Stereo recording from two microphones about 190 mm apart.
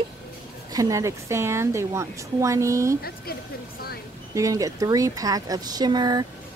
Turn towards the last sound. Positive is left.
turn(degrees=-20)  # may be behind; listen again after turning